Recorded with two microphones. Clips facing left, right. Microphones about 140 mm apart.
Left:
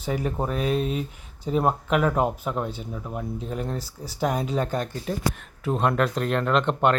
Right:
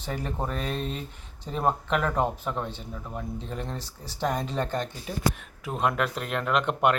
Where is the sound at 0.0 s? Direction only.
10° left (ahead or behind).